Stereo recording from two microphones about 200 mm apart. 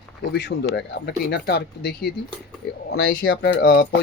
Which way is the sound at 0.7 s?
60° left (ahead or behind).